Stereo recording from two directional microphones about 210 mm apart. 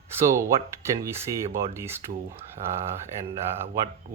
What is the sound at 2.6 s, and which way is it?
Speech, 35° right (ahead or behind).